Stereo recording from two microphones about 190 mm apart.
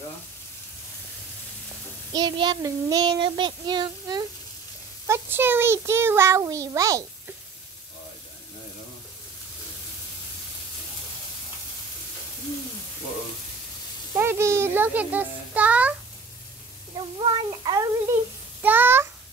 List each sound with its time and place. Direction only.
2.1 s child singing: 25° right (ahead or behind)
5.0 s a child's voice: 15° right (ahead or behind)
14.1 s a child's voice: 15° right (ahead or behind)
16.9 s child singing: 20° right (ahead or behind)
18.6 s a child's voice: 10° right (ahead or behind)